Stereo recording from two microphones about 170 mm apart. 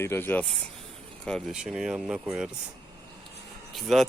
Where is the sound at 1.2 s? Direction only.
Centre (ahead or behind).